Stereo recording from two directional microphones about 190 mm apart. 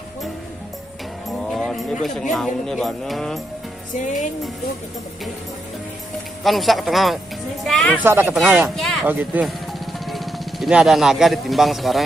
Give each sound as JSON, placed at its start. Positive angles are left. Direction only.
{"t": 1.4, "sound": "music", "side_deg": 0}
{"t": 2.3, "sound": "speech", "side_deg": 0}
{"t": 4.0, "sound": "music", "side_deg": 40}
{"t": 6.4, "sound": "speech", "side_deg": 0}
{"t": 8.0, "sound": "speech", "side_deg": -10}
{"t": 8.6, "sound": "speech", "side_deg": 0}